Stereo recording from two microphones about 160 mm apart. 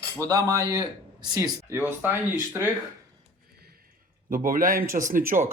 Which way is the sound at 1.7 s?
10° right (ahead or behind).